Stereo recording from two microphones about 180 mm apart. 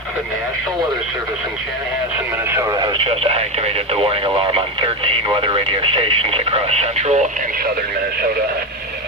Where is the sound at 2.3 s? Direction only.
15° right (ahead or behind); by 7.4 s 40° right (ahead or behind).